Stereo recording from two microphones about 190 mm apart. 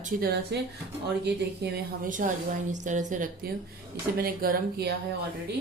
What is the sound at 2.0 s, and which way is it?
Speech, 45° right (ahead or behind).